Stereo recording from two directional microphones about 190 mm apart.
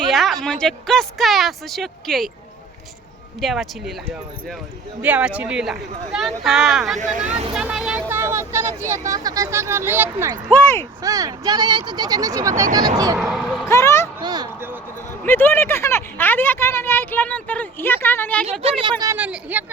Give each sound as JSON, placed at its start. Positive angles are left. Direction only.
{"t": 0.1, "sound": "a woman's voice", "side_deg": 0}
{"t": 3.4, "sound": "a woman's voice", "side_deg": 0}
{"t": 5.0, "sound": "a woman's voice", "side_deg": -5}
{"t": 7.0, "sound": "speech", "side_deg": -40}
{"t": 7.5, "sound": "speech", "side_deg": -5}
{"t": 13.1, "sound": "a woman's voice", "side_deg": 0}
{"t": 13.7, "sound": "a sound", "side_deg": 15}
{"t": 14.2, "sound": "a sound", "side_deg": -20}
{"t": 15.2, "sound": "speech", "side_deg": 10}
{"t": 18.6, "sound": "speech", "side_deg": -25}
{"t": 19.2, "sound": "speech", "side_deg": -10}